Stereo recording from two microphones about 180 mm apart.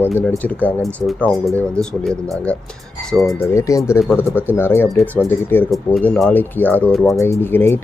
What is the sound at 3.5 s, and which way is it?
Speech, 15° left (ahead or behind).